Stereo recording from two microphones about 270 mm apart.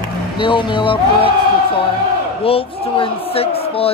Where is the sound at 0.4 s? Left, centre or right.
Centre.